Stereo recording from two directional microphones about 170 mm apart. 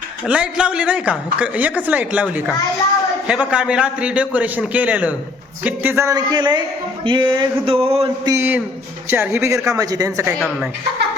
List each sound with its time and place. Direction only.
0.3 s a woman's voice: 5° right (ahead or behind); by 6.6 s 25° right (ahead or behind)
7.0 s a sound: 25° right (ahead or behind)
8.2 s a woman's voice: 15° right (ahead or behind)